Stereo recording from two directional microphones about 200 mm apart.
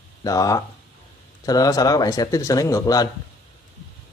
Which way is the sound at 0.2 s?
15° left (ahead or behind).